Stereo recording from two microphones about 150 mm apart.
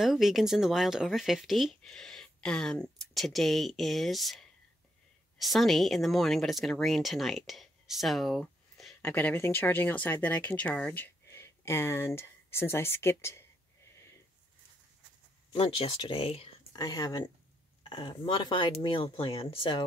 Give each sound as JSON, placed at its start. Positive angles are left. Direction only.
{"t": 0.0, "sound": "speech", "side_deg": 0}
{"t": 9.0, "sound": "speech", "side_deg": 15}
{"t": 15.5, "sound": "speech", "side_deg": 35}
{"t": 16.7, "sound": "speech", "side_deg": 25}